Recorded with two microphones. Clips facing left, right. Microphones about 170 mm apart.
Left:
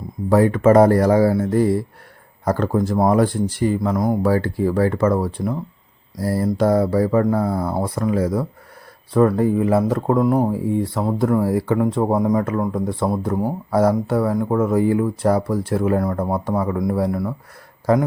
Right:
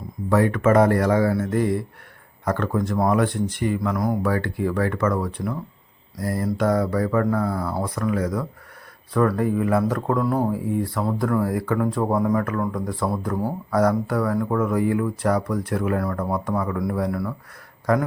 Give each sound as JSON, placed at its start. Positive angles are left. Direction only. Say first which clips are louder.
{"t": 0.3, "sound": "speech", "louder": "left 4 dB", "side_deg": 30}